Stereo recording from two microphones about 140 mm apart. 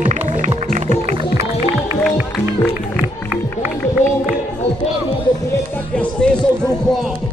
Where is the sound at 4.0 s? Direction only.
60° left (ahead or behind).